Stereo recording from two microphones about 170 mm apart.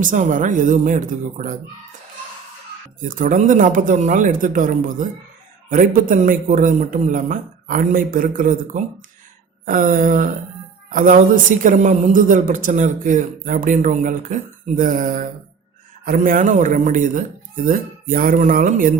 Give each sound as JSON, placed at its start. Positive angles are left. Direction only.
{"t": 0.0, "sound": "a man's voice", "side_deg": -50}
{"t": 3.0, "sound": "a man's voice", "side_deg": -50}